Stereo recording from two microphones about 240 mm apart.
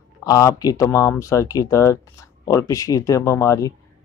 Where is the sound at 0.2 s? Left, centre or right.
Centre.